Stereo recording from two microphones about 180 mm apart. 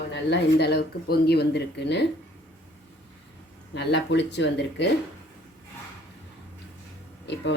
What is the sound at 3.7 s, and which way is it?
Speech, 75° left (ahead or behind).